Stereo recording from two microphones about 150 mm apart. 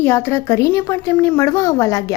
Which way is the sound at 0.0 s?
15° left (ahead or behind).